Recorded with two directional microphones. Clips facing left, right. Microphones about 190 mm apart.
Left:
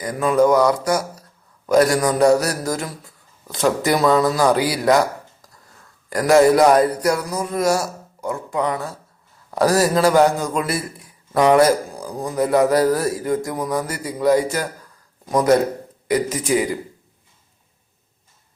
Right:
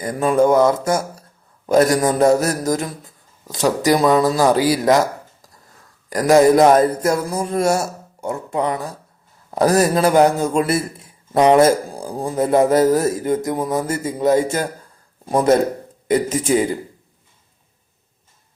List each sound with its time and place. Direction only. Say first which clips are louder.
0.0 s a man's voice: right 1 dB; 25° right (ahead or behind)